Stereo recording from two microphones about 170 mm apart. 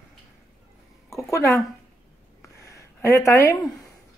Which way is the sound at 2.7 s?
15° left (ahead or behind).